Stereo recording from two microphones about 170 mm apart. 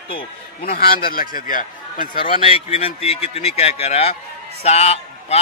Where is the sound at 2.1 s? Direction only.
35° left (ahead or behind).